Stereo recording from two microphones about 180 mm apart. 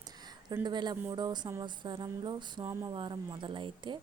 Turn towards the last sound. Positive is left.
turn(degrees=-25)  # may be behind; listen again after turning